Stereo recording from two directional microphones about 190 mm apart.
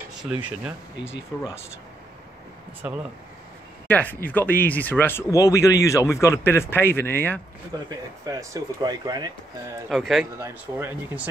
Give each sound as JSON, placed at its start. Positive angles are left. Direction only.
{"t": 1.3, "sound": "speech", "side_deg": 10}
{"t": 2.8, "sound": "speech", "side_deg": -10}
{"t": 3.8, "sound": "speech", "side_deg": 10}
{"t": 7.9, "sound": "speech", "side_deg": -20}
{"t": 9.8, "sound": "speech", "side_deg": 0}
{"t": 10.3, "sound": "speech", "side_deg": -15}